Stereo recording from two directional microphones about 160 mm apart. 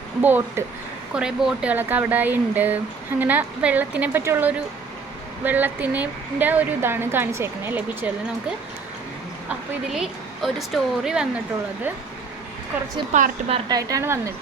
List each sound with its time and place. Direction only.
0.2 s a woman's voice: 10° right (ahead or behind)
13.1 s a woman's voice: 45° right (ahead or behind)
13.7 s speech: 20° right (ahead or behind)